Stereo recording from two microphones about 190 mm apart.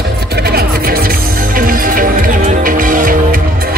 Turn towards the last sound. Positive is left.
turn(degrees=-45)  # may be behind; listen again after turning